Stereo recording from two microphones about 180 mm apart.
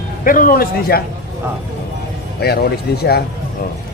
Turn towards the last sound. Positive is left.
turn(degrees=60)  # may be behind; listen again after turning